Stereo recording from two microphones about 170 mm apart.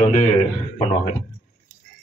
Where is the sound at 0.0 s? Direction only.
45° left (ahead or behind).